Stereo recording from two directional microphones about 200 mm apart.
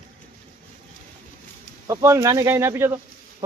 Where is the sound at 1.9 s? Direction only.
15° right (ahead or behind).